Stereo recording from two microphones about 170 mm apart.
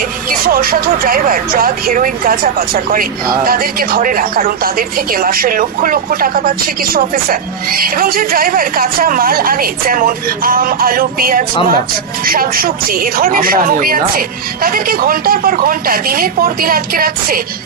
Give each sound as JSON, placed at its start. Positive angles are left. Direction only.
{"t": 0.3, "sound": "speech", "side_deg": -60}